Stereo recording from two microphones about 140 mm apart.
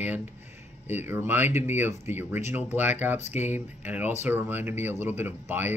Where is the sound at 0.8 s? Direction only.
15° right (ahead or behind).